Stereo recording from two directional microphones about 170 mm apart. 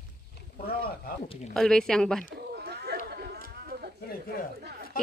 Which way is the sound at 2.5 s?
70° right (ahead or behind).